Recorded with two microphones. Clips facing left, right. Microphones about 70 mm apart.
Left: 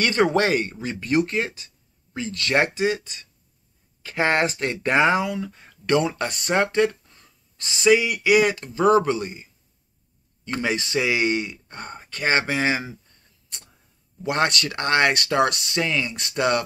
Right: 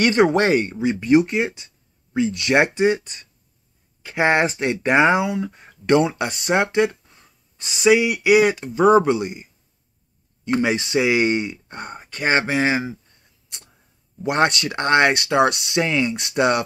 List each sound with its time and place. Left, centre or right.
0.0 s speech: centre
0.7 s speech: centre
4.0 s speech: centre
5.3 s speech: centre
5.9 s speech: centre
14.2 s speech: centre